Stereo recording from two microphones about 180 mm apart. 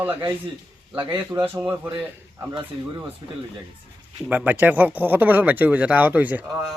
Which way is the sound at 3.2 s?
25° right (ahead or behind).